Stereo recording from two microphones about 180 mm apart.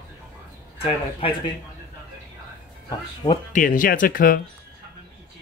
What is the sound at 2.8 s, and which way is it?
Speech, 25° left (ahead or behind).